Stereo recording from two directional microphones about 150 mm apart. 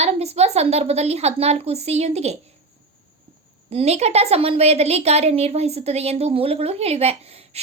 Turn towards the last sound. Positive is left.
turn(degrees=-40)  # may be behind; listen again after turning